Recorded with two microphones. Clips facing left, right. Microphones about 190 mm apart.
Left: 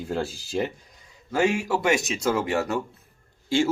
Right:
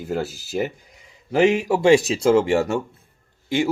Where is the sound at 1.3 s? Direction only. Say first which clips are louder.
Right 5 dB; 20° right (ahead or behind).